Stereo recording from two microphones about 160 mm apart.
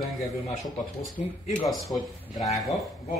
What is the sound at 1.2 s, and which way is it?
Speech, 45° left (ahead or behind).